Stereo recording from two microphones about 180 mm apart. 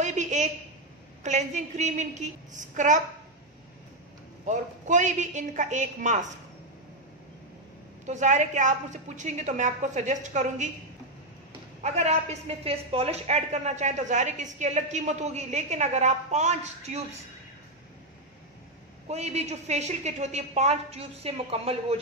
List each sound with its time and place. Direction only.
0.0 s a sound: 40° right (ahead or behind)
1.2 s a woman's voice: 40° right (ahead or behind)
4.5 s a woman's voice: 45° right (ahead or behind)
8.0 s a woman's voice: 40° right (ahead or behind)
11.8 s a woman's voice: 40° right (ahead or behind)
19.0 s a woman's voice: 35° right (ahead or behind)